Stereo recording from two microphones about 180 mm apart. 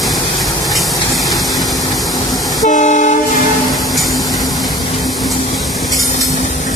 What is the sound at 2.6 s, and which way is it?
Train, 40° left (ahead or behind).